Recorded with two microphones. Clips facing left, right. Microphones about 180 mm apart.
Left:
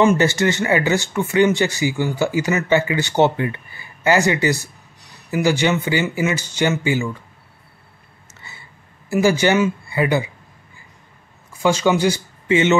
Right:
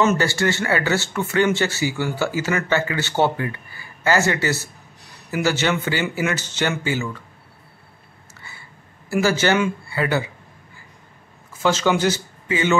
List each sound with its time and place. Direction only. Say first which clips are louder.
0.0 s speech: left 4 dB; 15° left (ahead or behind)
9.1 s speech: left 3 dB; 15° left (ahead or behind)
11.5 s speech: left 2 dB; 15° left (ahead or behind)
12.4 s speech: left 5 dB; 25° left (ahead or behind)